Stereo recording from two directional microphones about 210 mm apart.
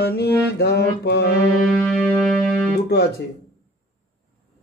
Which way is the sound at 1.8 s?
5° left (ahead or behind).